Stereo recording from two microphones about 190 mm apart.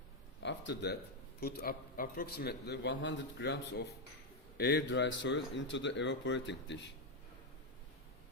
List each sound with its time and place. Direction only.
0.4 s a man's voice: 60° left (ahead or behind)